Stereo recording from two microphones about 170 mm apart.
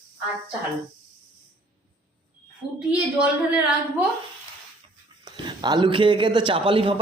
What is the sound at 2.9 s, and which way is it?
Speech, 5° right (ahead or behind).